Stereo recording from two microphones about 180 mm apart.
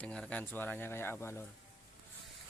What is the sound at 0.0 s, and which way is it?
Speech, 5° left (ahead or behind).